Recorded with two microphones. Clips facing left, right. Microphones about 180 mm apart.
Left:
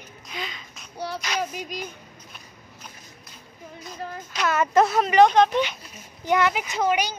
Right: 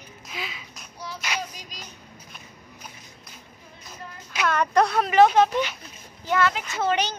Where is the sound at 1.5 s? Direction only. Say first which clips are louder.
Left 11 dB; 55° left (ahead or behind).